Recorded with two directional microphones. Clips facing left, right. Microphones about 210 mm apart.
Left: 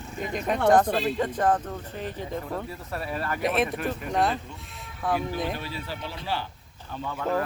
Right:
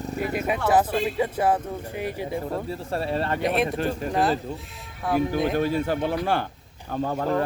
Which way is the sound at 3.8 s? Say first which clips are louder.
Right 4 dB; 30° right (ahead or behind).